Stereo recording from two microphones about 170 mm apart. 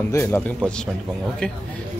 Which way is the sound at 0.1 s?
15° left (ahead or behind).